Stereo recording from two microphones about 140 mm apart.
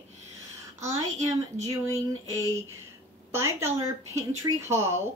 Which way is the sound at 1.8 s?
20° right (ahead or behind).